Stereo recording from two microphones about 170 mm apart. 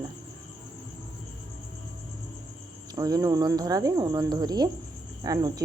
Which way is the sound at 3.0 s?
20° right (ahead or behind).